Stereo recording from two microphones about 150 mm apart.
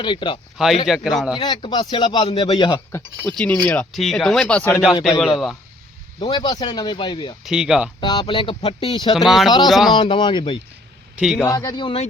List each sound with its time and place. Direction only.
0.0 s speech: 30° left (ahead or behind)
0.9 s speech: centre (ahead or behind)
1.4 s speech: 30° left (ahead or behind)
3.2 s speech: 10° left (ahead or behind)
4.7 s speech: 5° right (ahead or behind)
6.1 s speech: 30° left (ahead or behind)
7.4 s speech: 5° right (ahead or behind)
8.0 s speech: 30° left (ahead or behind)
9.1 s speech: centre (ahead or behind)
9.9 s speech: 35° left (ahead or behind)
11.2 s speech: centre (ahead or behind)
11.4 s speech: 25° left (ahead or behind)